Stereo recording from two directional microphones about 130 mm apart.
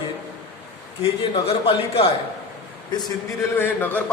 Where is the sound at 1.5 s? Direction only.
45° left (ahead or behind).